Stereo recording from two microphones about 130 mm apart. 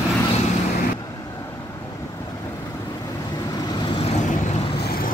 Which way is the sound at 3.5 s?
30° left (ahead or behind).